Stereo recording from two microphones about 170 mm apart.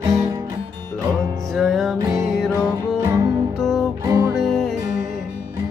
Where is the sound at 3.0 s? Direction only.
15° right (ahead or behind).